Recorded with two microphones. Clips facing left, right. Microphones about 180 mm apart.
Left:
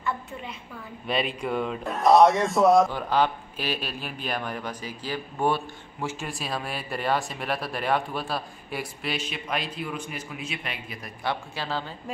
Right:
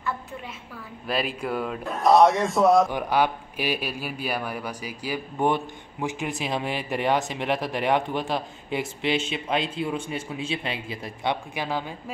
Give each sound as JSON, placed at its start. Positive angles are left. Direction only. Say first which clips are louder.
{"t": 1.0, "sound": "speech", "louder": "even", "side_deg": 0}
{"t": 2.9, "sound": "speech", "louder": "right 1 dB", "side_deg": -15}
{"t": 11.5, "sound": "a woman's voice", "louder": "right 2 dB", "side_deg": -15}